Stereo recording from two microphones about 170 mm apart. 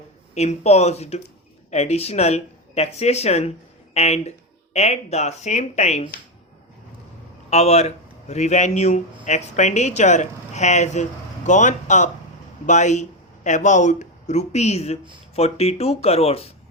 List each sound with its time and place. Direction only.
0.3 s speech: 40° left (ahead or behind)
7.5 s a man's voice: 40° left (ahead or behind)